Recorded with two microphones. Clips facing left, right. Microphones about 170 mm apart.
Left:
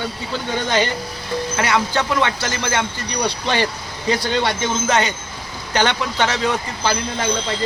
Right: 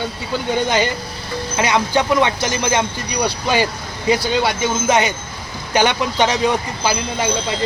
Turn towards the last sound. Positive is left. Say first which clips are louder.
# right 1 dB
turn(degrees=-10)  # may be behind; listen again after turning